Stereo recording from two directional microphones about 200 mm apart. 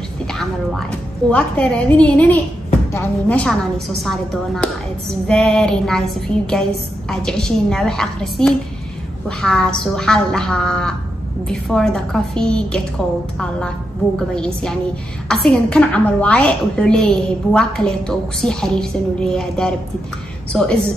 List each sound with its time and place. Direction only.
0.3 s a woman's voice: centre (ahead or behind)
14.1 s a woman's voice: 5° left (ahead or behind)